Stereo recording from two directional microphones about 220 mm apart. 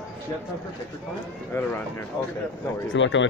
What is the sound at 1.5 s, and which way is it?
Speech, 10° left (ahead or behind).